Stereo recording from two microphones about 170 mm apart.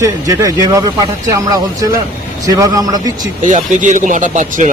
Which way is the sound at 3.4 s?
45° right (ahead or behind).